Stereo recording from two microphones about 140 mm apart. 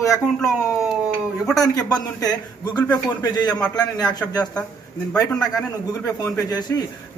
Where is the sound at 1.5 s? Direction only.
25° left (ahead or behind).